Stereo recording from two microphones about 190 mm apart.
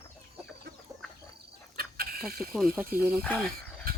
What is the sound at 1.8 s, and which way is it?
Chicken, 50° right (ahead or behind).